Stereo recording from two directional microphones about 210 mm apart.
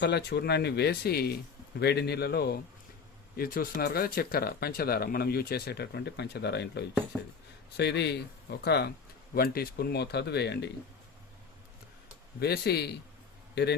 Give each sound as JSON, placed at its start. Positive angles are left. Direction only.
{"t": 0.0, "sound": "speech", "side_deg": 50}
{"t": 12.4, "sound": "speech", "side_deg": 50}